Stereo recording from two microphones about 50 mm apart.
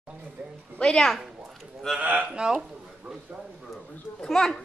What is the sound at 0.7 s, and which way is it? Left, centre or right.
Speech, centre.